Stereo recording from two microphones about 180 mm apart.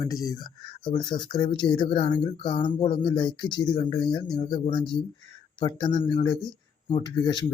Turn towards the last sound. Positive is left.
turn(degrees=25)  # may be behind; listen again after turning